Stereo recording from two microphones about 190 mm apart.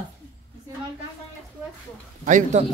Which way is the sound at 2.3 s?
40° right (ahead or behind).